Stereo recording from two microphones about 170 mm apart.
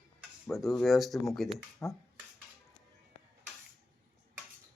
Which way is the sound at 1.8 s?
15° left (ahead or behind).